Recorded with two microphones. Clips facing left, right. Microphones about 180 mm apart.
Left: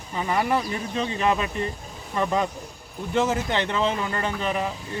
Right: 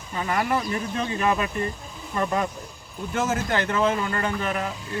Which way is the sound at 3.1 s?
20° left (ahead or behind).